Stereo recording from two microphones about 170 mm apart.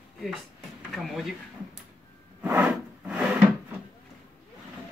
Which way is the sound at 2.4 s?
10° right (ahead or behind).